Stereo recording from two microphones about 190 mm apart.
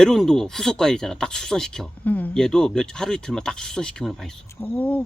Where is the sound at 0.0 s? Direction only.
Centre (ahead or behind).